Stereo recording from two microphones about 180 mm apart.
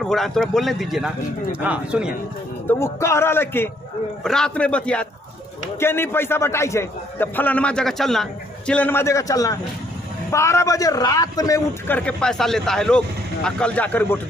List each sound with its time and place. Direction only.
0.0 s speech: centre (ahead or behind)
2.7 s a man's voice: 15° left (ahead or behind)
12.0 s speech: 5° left (ahead or behind)